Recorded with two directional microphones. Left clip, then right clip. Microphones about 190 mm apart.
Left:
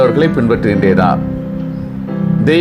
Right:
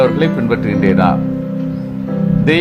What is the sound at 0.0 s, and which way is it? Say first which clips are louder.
A man's voice: left 2 dB; 20° left (ahead or behind).